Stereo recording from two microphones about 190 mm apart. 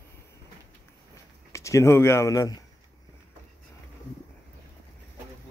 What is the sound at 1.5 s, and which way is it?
Speech, 15° left (ahead or behind).